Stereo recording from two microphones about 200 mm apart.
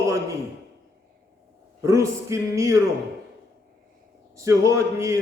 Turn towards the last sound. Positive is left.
turn(degrees=-15)  # may be behind; listen again after turning